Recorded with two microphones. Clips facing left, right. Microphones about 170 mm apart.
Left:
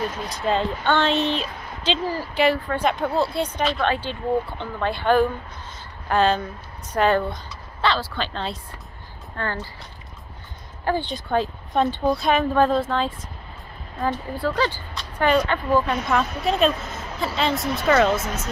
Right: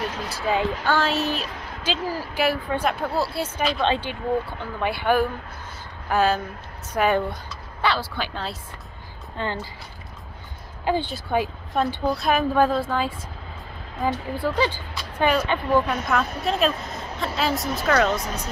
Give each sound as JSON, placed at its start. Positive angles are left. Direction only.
{"t": 0.3, "sound": "speech", "side_deg": -5}
{"t": 3.8, "sound": "speech", "side_deg": -15}
{"t": 9.4, "sound": "speech", "side_deg": -20}
{"t": 10.9, "sound": "speech", "side_deg": -10}
{"t": 14.0, "sound": "speech", "side_deg": -15}
{"t": 15.9, "sound": "speech", "side_deg": 0}